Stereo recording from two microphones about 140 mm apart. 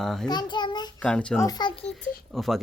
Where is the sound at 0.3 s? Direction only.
30° left (ahead or behind).